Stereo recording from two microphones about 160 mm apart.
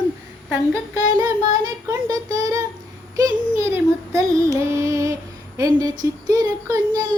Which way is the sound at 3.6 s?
20° right (ahead or behind).